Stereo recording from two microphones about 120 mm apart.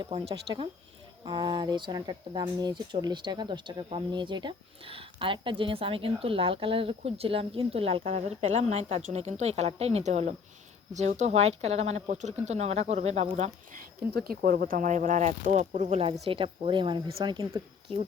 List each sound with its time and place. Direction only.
0.1 s speech: 45° right (ahead or behind); by 13.5 s 60° right (ahead or behind)
14.8 s speech: 90° right; by 16.1 s 60° right (ahead or behind)
16.2 s speech: 45° right (ahead or behind)